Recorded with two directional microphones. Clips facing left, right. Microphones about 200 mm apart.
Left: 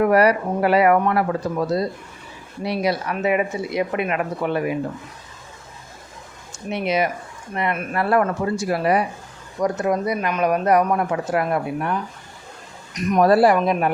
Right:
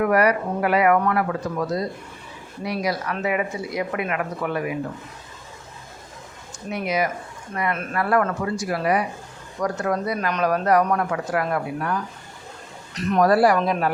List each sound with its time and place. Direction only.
0.0 s speech: 30° left (ahead or behind)
6.7 s speech: 25° left (ahead or behind)
13.2 s speech: 25° left (ahead or behind)